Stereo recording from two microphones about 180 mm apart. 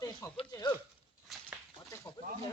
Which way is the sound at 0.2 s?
15° left (ahead or behind).